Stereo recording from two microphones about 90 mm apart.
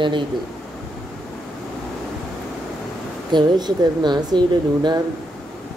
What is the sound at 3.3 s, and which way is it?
Speech, 55° right (ahead or behind).